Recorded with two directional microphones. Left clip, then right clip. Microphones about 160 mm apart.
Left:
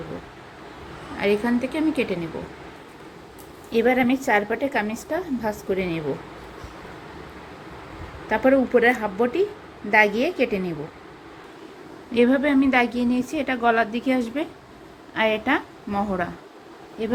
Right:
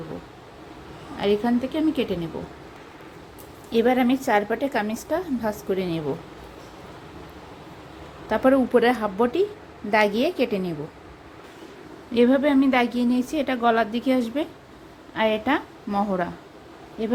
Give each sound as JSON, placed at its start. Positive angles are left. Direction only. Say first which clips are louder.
{"t": 1.2, "sound": "a woman's voice", "louder": "even", "side_deg": -5}
{"t": 3.7, "sound": "a woman's voice", "louder": "left 1 dB", "side_deg": -15}
{"t": 8.3, "sound": "a woman's voice", "louder": "left 1 dB", "side_deg": -10}
{"t": 12.1, "sound": "a woman's voice", "louder": "even", "side_deg": -15}